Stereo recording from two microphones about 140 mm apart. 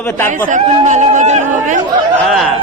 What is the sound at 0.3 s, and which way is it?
Speech, 60° right (ahead or behind).